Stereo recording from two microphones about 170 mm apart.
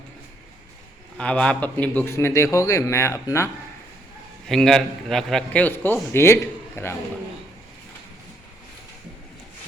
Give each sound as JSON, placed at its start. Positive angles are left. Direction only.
{"t": 1.2, "sound": "a man's voice", "side_deg": 5}
{"t": 4.4, "sound": "a man's voice", "side_deg": 0}